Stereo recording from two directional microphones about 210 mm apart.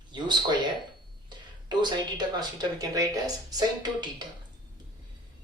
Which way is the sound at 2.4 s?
20° right (ahead or behind).